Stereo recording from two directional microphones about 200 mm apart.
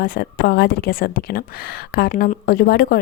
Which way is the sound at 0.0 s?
45° left (ahead or behind).